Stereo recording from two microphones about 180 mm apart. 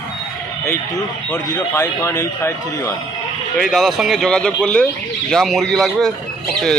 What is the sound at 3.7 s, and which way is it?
Speech, centre (ahead or behind).